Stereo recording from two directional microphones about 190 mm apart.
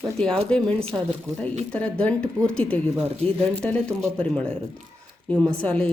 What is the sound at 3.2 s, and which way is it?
Speech, 30° right (ahead or behind).